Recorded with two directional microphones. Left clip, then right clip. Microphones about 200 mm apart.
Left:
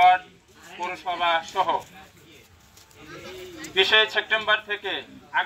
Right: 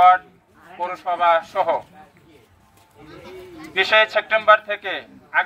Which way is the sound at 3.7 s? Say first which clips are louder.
Right 3 dB; 30° right (ahead or behind).